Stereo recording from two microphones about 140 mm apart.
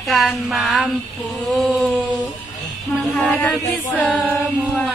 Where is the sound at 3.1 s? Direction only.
5° left (ahead or behind).